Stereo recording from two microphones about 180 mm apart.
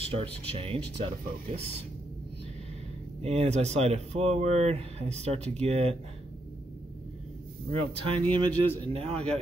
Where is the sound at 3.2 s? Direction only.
35° right (ahead or behind).